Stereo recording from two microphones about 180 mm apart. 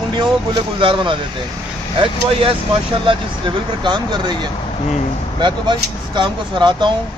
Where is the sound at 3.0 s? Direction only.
25° right (ahead or behind).